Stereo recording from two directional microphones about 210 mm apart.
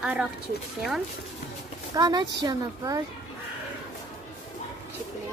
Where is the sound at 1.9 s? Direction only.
15° right (ahead or behind).